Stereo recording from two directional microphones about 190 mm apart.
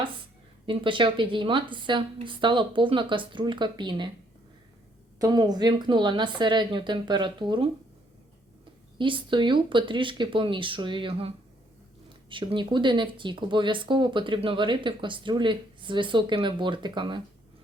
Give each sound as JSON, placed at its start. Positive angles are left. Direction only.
{"t": 0.6, "sound": "speech", "side_deg": -25}
{"t": 5.2, "sound": "speech", "side_deg": -20}
{"t": 9.0, "sound": "speech", "side_deg": -25}